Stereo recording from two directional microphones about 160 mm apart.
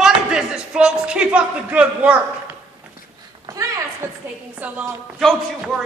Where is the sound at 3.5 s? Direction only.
20° right (ahead or behind).